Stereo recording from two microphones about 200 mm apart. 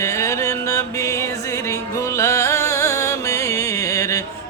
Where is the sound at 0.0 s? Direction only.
15° left (ahead or behind).